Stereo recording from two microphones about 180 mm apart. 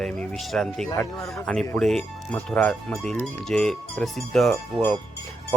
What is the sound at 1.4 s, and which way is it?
Speech, 5° left (ahead or behind).